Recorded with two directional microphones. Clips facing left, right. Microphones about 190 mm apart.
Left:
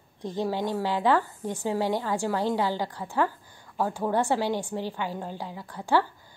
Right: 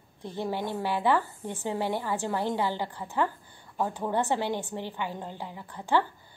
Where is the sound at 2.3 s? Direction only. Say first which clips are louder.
Left 3 dB; 15° right (ahead or behind).